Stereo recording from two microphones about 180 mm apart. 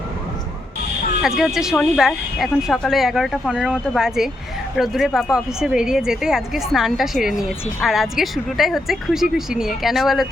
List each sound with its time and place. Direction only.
1.2 s a woman's voice: centre (ahead or behind)